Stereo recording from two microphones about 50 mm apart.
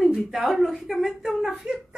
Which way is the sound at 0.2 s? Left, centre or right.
Centre.